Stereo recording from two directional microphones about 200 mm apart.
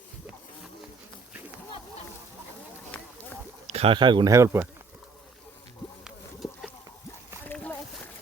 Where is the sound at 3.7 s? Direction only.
30° right (ahead or behind).